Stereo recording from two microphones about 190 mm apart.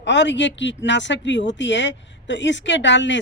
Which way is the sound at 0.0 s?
70° left (ahead or behind).